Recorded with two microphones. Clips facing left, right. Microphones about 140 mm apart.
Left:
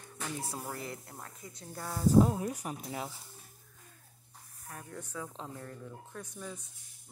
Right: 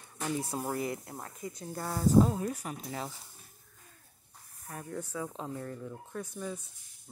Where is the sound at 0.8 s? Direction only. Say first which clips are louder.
Right 7 dB; 15° right (ahead or behind).